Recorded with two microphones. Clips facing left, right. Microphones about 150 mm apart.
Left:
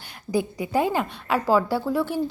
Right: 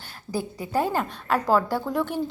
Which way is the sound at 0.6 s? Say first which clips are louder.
Right 1 dB; 10° left (ahead or behind).